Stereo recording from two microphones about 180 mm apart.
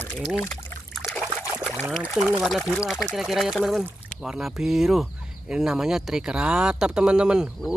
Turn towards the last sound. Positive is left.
turn(degrees=-5)  # may be behind; listen again after turning